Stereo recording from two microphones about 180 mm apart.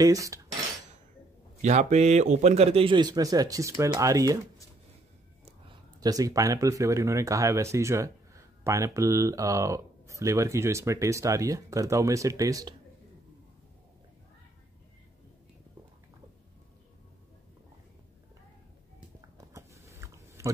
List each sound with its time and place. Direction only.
0.0 s cutlery: 20° right (ahead or behind)
1.6 s a man's voice: 40° right (ahead or behind); by 4.4 s 20° right (ahead or behind)
5.4 s speech: 25° right (ahead or behind)
19.3 s chewing: 15° right (ahead or behind)